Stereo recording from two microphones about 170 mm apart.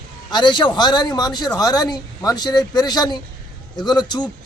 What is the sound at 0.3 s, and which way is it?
Speech, 25° left (ahead or behind).